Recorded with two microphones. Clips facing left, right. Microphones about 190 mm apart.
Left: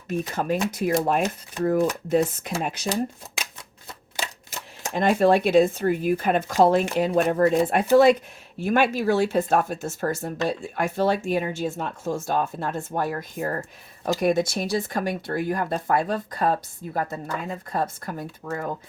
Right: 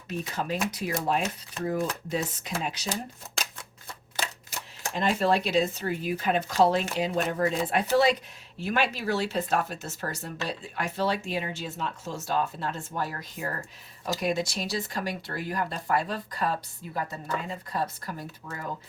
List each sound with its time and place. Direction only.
0.1 s speech: 50° left (ahead or behind)
4.2 s typewriter: 10° left (ahead or behind)
4.9 s speech: 55° left (ahead or behind)